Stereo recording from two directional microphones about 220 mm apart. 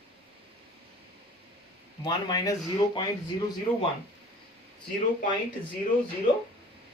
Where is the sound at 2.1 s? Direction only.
15° left (ahead or behind).